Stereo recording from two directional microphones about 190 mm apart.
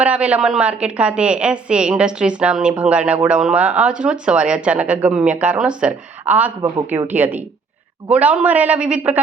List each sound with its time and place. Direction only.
0.0 s a woman's voice: 5° right (ahead or behind)